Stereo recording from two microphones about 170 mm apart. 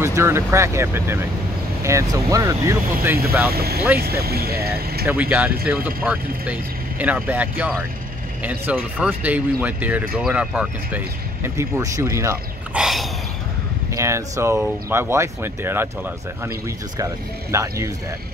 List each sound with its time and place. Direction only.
0.0 s speech: 15° right (ahead or behind)
3.4 s speech: 65° right (ahead or behind)
5.0 s speech: 10° right (ahead or behind)
11.4 s speech: 15° right (ahead or behind)
12.7 s snort: centre (ahead or behind)
13.9 s speech: 20° right (ahead or behind)
17.0 s speech: 20° right (ahead or behind)